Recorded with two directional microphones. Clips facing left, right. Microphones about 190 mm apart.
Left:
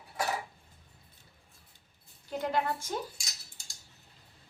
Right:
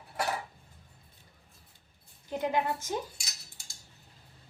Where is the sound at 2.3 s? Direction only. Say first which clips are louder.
Right 1 dB; 15° right (ahead or behind).